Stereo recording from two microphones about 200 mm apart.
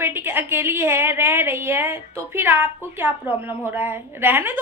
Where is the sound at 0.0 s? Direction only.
10° right (ahead or behind).